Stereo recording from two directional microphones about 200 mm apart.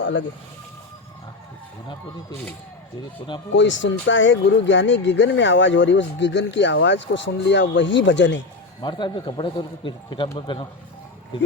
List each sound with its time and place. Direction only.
0.0 s speech: 65° left (ahead or behind)
3.5 s speech: 65° left (ahead or behind)
8.8 s a man's voice: 25° left (ahead or behind)